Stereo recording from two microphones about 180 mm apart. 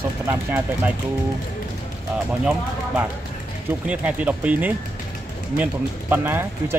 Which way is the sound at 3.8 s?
5° right (ahead or behind).